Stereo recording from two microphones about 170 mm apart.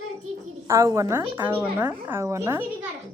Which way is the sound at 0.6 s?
20° right (ahead or behind).